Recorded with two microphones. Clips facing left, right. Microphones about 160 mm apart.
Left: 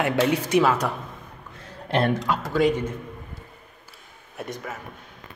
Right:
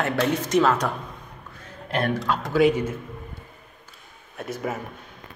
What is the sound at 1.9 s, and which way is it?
Speech, 30° left (ahead or behind).